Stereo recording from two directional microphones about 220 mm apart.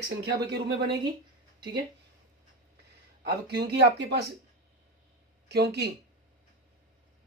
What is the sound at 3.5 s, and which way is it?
Speech, 50° right (ahead or behind).